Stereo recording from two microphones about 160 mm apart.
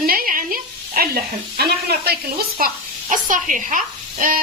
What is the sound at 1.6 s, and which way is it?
Speech, 85° right.